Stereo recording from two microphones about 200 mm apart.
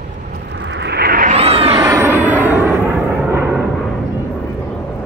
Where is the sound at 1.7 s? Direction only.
15° right (ahead or behind).